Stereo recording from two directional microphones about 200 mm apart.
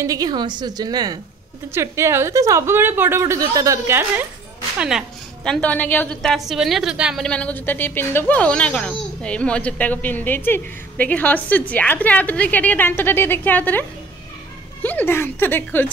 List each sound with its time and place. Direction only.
0.0 s a woman's voice: 20° right (ahead or behind)
4.7 s a woman's voice: 5° right (ahead or behind)